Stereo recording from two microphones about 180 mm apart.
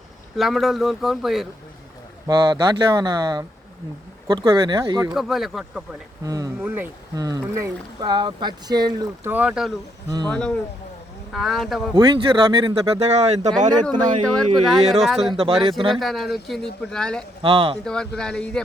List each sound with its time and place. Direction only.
0.3 s speech: centre (ahead or behind)
2.2 s speech: 20° right (ahead or behind)
5.1 s speech: centre (ahead or behind)
6.2 s speech: 20° right (ahead or behind)
9.3 s speech: 5° right (ahead or behind)
11.9 s speech: 25° right (ahead or behind)
14.3 s speech: centre (ahead or behind)
15.3 s speech: 30° right (ahead or behind)
15.9 s speech: centre (ahead or behind)
17.4 s speech: 30° right (ahead or behind)
17.8 s speech: 5° left (ahead or behind)